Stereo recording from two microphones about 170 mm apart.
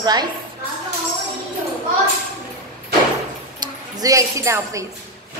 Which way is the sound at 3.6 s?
20° right (ahead or behind).